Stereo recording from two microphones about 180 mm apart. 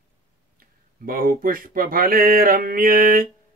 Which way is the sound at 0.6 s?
50° right (ahead or behind).